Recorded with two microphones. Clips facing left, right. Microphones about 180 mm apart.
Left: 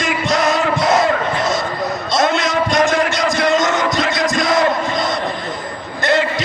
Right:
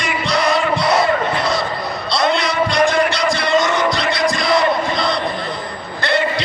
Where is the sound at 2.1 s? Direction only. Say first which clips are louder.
Left 1 dB; 45° left (ahead or behind).